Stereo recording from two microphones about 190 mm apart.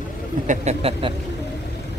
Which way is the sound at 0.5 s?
35° right (ahead or behind).